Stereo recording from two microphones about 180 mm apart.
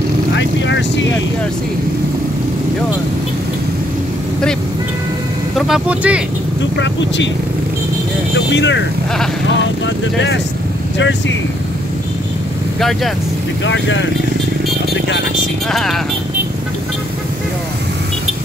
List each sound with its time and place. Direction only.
0.4 s speech: 80° left
5.6 s speech: 5° right (ahead or behind)
6.8 s speech: 85° left
8.5 s speech: 85° left
11.0 s speech: 90° left
13.7 s speech: 90° left
15.7 s speech: centre (ahead or behind)